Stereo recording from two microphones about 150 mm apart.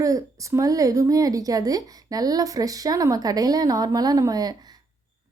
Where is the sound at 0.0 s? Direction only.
20° right (ahead or behind).